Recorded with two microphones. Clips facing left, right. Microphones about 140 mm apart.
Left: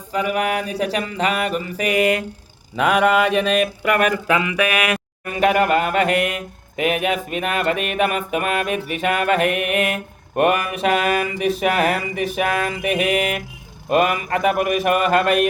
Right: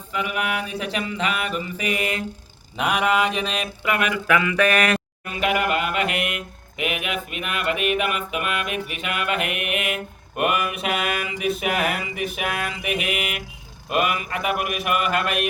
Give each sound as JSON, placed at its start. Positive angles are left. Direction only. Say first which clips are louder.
{"t": 0.1, "sound": "mantra", "louder": "left 5 dB", "side_deg": 40}
{"t": 4.3, "sound": "a sound", "louder": "left 1 dB", "side_deg": 25}
{"t": 4.5, "sound": "speech", "louder": "even", "side_deg": 10}
{"t": 5.2, "sound": "mantra", "louder": "left 8 dB", "side_deg": 45}